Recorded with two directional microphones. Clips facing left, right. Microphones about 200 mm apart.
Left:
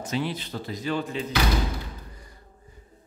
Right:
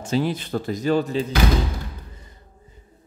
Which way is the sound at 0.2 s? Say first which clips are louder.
Right 6 dB; 45° right (ahead or behind).